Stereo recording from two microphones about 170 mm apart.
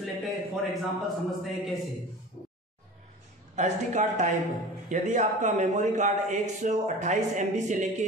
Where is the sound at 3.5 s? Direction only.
45° right (ahead or behind).